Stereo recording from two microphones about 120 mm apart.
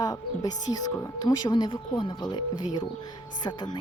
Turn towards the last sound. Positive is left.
turn(degrees=35)  # may be behind; listen again after turning